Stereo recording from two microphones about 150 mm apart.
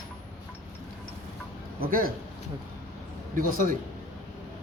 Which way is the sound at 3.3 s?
65° right (ahead or behind).